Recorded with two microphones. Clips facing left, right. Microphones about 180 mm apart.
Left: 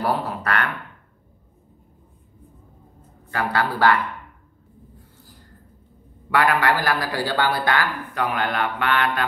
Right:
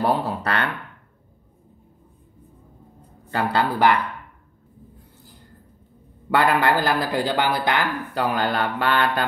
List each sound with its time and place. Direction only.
0.0 s speech: 30° right (ahead or behind)
3.3 s speech: 25° right (ahead or behind)
6.3 s speech: 25° right (ahead or behind)
8.1 s speech: 30° right (ahead or behind)